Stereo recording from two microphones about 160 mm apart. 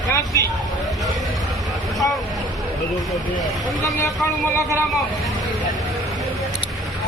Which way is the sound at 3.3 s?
Centre (ahead or behind).